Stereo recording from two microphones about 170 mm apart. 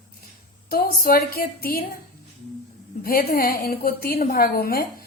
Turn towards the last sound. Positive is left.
turn(degrees=60)  # may be behind; listen again after turning